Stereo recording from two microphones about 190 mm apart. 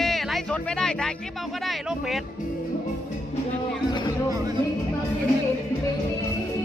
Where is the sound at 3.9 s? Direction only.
20° left (ahead or behind).